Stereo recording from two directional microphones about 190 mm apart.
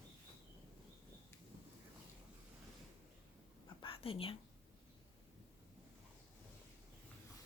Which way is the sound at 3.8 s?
30° left (ahead or behind).